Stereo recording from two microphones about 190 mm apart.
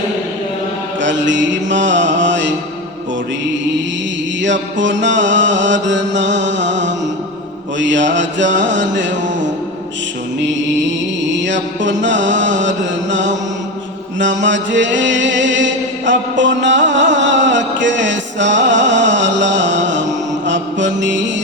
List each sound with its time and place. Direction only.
1.0 s mantra: 70° right (ahead or behind)
4.4 s mantra: 70° right (ahead or behind)
10.4 s mantra: 70° right (ahead or behind)